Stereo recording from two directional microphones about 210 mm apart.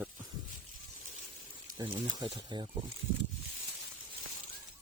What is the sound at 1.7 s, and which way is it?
Speech, 20° right (ahead or behind).